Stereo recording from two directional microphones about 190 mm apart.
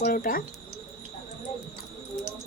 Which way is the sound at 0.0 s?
50° left (ahead or behind).